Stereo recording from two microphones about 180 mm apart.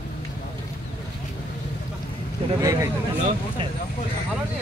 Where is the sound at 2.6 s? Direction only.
20° right (ahead or behind).